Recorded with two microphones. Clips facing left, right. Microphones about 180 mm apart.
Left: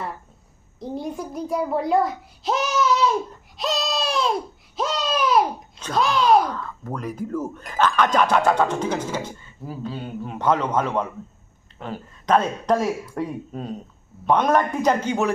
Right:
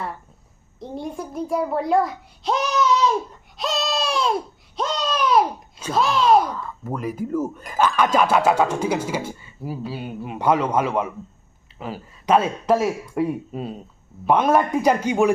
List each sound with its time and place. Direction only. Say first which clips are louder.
0.8 s a child's voice: left 1 dB; centre (ahead or behind)
3.6 s a sound: right 1 dB; centre (ahead or behind)
4.8 s a child's voice: even; 5° left (ahead or behind); by 15.3 s 10° right (ahead or behind)